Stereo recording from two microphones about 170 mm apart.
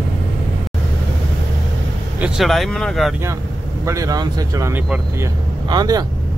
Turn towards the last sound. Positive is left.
turn(degrees=-25)  # may be behind; listen again after turning